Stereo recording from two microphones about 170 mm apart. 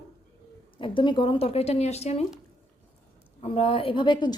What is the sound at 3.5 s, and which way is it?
Speech, 35° left (ahead or behind).